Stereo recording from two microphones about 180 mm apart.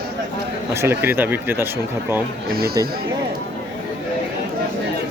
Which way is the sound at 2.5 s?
55° right (ahead or behind).